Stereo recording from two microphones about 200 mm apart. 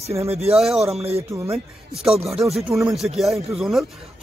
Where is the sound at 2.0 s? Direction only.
Centre (ahead or behind).